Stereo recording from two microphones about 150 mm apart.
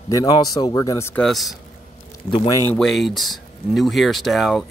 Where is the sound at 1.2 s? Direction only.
Centre (ahead or behind).